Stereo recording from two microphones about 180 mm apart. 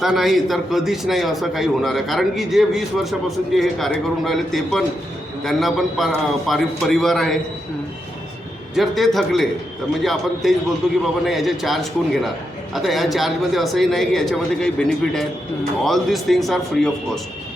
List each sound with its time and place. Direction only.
0.0 s a man's voice: centre (ahead or behind)
8.7 s a man's voice: centre (ahead or behind)